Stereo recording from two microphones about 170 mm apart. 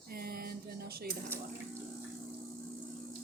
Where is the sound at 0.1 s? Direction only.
60° right (ahead or behind).